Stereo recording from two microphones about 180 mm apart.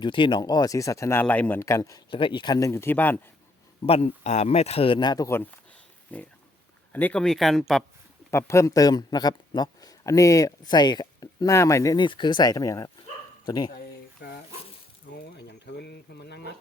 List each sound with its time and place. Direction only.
0.0 s speech: 25° left (ahead or behind)
2.0 s speech: 25° left (ahead or behind); by 3.2 s 10° left (ahead or behind)
3.8 s speech: 35° left (ahead or behind); by 7.9 s centre (ahead or behind)
8.3 s a man's voice: 15° left (ahead or behind)
14.2 s speech: 65° left (ahead or behind)
15.1 s boiling: 65° left (ahead or behind)